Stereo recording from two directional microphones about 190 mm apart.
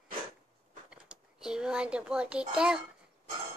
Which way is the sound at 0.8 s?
5° right (ahead or behind).